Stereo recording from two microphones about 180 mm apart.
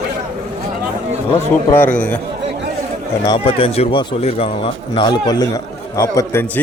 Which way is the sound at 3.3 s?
30° left (ahead or behind).